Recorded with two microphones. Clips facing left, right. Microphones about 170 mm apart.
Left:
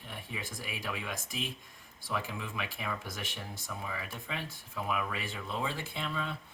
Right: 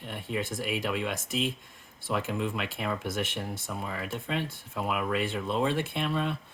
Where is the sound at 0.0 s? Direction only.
65° right (ahead or behind).